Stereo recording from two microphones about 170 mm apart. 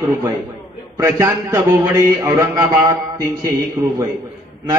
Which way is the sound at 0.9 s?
15° right (ahead or behind).